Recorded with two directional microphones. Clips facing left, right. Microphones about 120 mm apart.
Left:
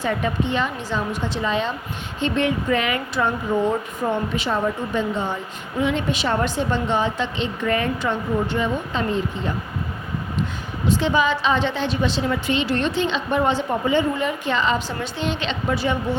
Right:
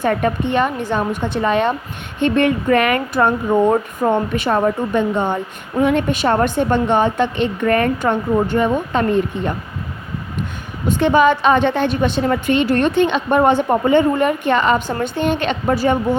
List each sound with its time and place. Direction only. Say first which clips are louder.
0.0 s a woman's voice: right 5 dB; 55° right (ahead or behind)
10.8 s a woman's voice: right 6 dB; 55° right (ahead or behind)